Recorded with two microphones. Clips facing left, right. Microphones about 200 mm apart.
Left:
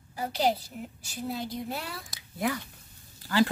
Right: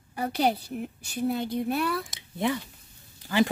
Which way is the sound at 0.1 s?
60° right (ahead or behind).